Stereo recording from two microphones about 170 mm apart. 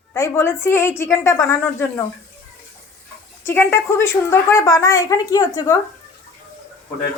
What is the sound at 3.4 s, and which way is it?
A woman's voice, 15° left (ahead or behind).